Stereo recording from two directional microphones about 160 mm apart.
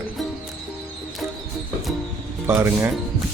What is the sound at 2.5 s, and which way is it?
Speech, 15° right (ahead or behind).